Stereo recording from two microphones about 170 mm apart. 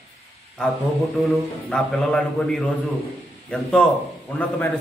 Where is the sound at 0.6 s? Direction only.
5° left (ahead or behind).